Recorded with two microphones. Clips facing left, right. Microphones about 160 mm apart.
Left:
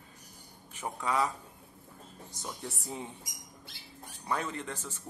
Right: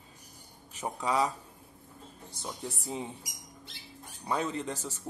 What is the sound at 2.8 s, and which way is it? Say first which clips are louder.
Speech: right 4 dB; 25° right (ahead or behind).